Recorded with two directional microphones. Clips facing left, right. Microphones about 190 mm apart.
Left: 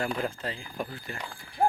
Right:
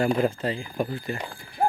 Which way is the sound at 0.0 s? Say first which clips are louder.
Right 8 dB; 15° right (ahead or behind).